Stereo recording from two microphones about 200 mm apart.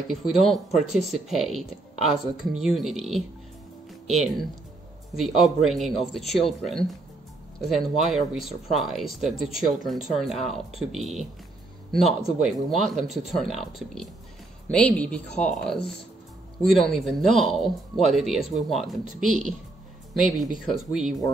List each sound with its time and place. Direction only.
0.1 s speech: centre (ahead or behind)
19.2 s speech: 40° right (ahead or behind)
20.5 s speech: centre (ahead or behind)